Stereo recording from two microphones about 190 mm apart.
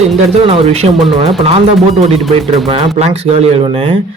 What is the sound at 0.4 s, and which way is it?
Speech, 30° right (ahead or behind).